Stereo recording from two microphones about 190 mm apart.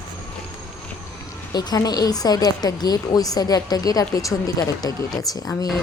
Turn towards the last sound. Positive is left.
turn(degrees=20)  # may be behind; listen again after turning